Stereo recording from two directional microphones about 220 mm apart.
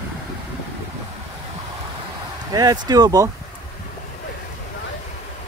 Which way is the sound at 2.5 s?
20° right (ahead or behind).